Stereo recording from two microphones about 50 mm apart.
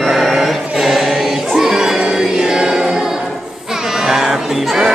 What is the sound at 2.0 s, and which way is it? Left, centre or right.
Music, centre.